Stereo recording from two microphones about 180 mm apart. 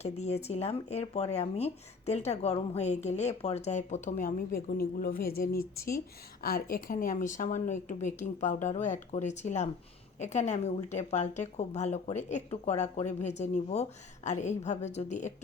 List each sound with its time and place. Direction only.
0.0 s speech: 35° left (ahead or behind)